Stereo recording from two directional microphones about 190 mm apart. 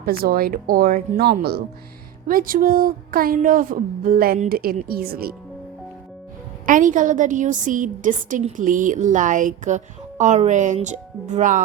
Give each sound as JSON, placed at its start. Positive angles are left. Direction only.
{"t": 0.0, "sound": "speech", "side_deg": -55}
{"t": 6.7, "sound": "a woman's voice", "side_deg": -45}